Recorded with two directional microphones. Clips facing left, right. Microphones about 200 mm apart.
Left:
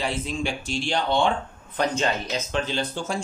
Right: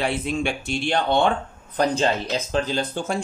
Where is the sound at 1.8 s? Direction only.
35° right (ahead or behind).